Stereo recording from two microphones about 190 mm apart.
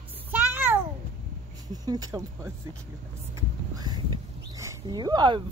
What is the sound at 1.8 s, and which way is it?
Speech, 20° right (ahead or behind).